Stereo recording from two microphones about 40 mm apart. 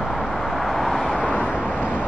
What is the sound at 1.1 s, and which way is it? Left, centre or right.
Vehicle, left.